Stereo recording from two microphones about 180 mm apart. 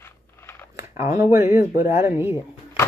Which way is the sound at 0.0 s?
10° left (ahead or behind).